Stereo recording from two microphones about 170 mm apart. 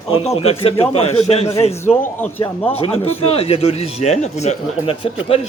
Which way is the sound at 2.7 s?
35° left (ahead or behind).